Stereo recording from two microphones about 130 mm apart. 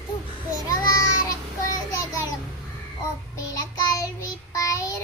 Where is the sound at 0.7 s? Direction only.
30° left (ahead or behind).